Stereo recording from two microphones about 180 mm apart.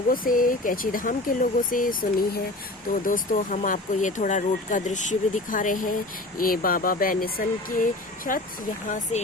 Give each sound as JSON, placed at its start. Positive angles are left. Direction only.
{"t": 0.1, "sound": "speech", "side_deg": 50}